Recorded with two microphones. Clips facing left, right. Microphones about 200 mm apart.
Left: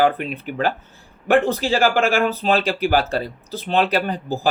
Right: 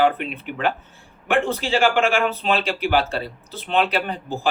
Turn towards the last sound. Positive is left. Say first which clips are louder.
# left 3 dB
turn(degrees=40)  # may be behind; listen again after turning